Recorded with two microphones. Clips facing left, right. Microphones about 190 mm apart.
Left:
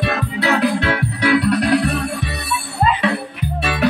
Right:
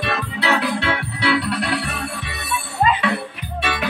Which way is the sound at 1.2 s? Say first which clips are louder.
Left 5 dB; 40° left (ahead or behind).